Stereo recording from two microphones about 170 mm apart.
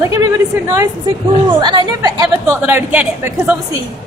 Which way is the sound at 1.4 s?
25° right (ahead or behind).